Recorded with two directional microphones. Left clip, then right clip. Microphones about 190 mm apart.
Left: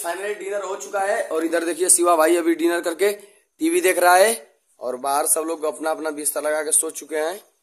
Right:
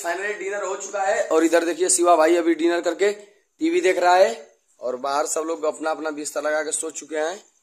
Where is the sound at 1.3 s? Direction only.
15° right (ahead or behind).